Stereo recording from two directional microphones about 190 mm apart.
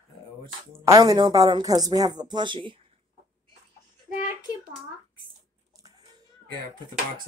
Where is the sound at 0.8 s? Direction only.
20° right (ahead or behind).